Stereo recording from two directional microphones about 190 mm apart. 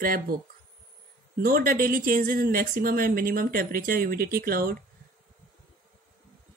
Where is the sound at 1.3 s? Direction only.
50° right (ahead or behind).